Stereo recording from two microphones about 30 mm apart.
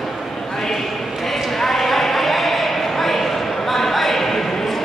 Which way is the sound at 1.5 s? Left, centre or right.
Centre.